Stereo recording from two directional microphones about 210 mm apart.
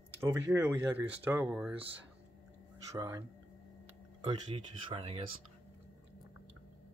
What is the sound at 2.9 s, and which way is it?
Speech, 15° right (ahead or behind).